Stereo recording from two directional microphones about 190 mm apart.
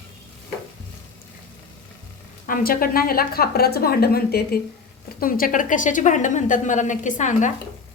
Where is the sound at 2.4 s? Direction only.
50° left (ahead or behind).